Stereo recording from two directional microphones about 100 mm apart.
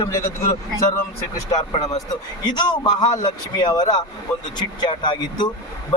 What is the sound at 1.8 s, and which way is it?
A man's voice, 40° left (ahead or behind).